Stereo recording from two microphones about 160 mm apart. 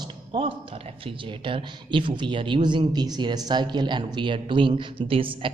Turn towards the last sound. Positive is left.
turn(degrees=-35)  # may be behind; listen again after turning